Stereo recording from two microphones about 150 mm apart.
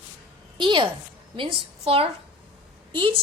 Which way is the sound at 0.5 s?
35° right (ahead or behind).